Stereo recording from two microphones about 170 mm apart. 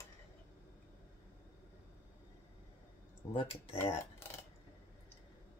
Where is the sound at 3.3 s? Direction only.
35° left (ahead or behind).